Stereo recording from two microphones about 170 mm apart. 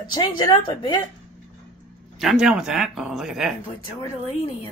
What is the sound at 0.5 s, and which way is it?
Speech, 25° left (ahead or behind).